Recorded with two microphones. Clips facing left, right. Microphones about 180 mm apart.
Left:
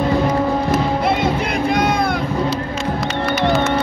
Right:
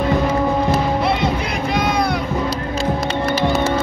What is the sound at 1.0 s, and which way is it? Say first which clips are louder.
Music: left 1 dB; 50° left (ahead or behind).